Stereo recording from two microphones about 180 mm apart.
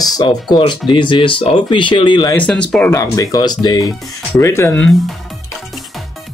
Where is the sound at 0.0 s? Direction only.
20° left (ahead or behind).